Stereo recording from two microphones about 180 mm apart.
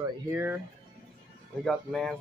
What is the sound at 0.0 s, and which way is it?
Speech, 10° right (ahead or behind).